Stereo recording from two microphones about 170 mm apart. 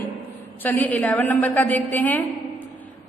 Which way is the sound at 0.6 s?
10° left (ahead or behind).